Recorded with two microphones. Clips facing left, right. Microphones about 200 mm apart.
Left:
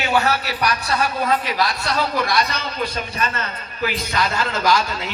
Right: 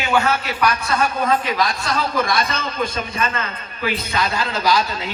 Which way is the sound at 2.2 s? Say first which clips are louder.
Right 1 dB; 50° right (ahead or behind).